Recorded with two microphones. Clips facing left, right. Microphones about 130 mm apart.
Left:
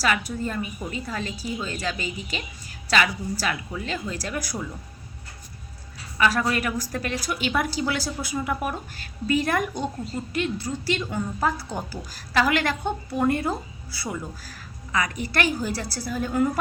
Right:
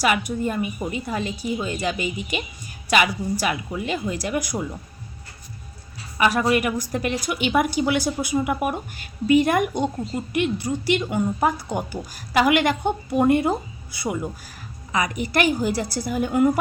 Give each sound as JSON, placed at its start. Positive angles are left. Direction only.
{"t": 0.0, "sound": "a woman's voice", "side_deg": -15}
{"t": 6.1, "sound": "a woman's voice", "side_deg": -20}